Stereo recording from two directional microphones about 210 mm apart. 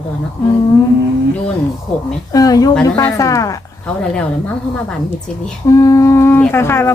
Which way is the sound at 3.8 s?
5° left (ahead or behind).